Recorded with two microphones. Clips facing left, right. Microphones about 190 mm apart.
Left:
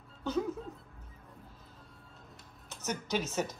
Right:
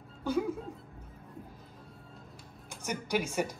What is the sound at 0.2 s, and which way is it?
Music, 10° right (ahead or behind).